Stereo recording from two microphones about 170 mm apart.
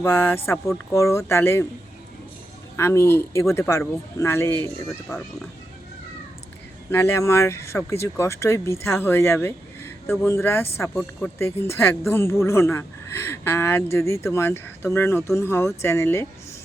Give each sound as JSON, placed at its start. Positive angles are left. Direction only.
{"t": 0.0, "sound": "speech", "side_deg": 15}
{"t": 2.7, "sound": "speech", "side_deg": 15}
{"t": 6.9, "sound": "speech", "side_deg": 15}